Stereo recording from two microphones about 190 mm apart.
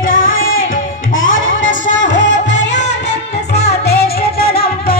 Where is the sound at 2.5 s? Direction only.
65° left (ahead or behind).